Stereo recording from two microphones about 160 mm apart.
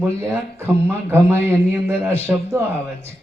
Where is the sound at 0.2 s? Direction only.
15° right (ahead or behind).